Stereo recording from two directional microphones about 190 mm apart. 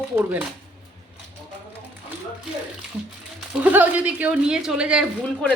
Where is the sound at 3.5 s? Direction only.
10° right (ahead or behind).